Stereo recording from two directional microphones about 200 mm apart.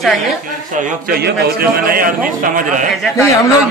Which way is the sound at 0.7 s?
40° right (ahead or behind).